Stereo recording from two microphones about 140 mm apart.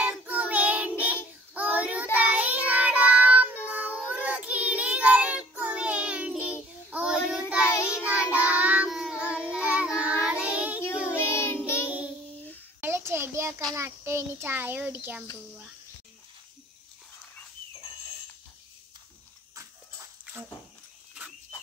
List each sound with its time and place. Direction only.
0.0 s child singing: 10° right (ahead or behind)
11.1 s child singing: 15° left (ahead or behind)
11.8 s child singing: 10° right (ahead or behind)
12.8 s a sound: 15° right (ahead or behind)
13.7 s a child's voice: 20° right (ahead or behind)